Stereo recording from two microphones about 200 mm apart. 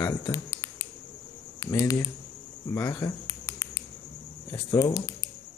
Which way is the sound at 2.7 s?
15° left (ahead or behind).